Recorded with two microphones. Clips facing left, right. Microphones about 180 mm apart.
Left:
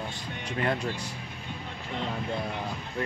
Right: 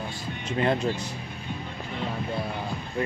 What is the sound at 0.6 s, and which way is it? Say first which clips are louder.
Speech: right 5 dB; 25° right (ahead or behind).